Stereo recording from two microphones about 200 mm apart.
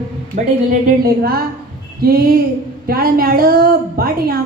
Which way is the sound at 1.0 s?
50° right (ahead or behind).